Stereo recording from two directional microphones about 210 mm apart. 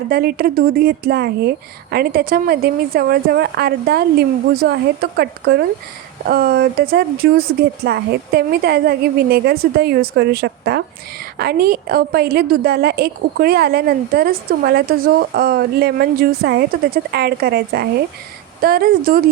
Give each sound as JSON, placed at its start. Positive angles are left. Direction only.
{"t": 0.1, "sound": "a woman's voice", "side_deg": -45}